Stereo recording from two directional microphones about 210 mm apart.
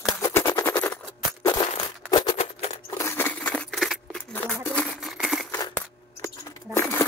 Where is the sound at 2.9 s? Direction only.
10° left (ahead or behind).